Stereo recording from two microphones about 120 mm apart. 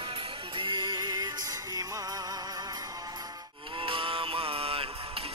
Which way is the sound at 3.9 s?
45° right (ahead or behind).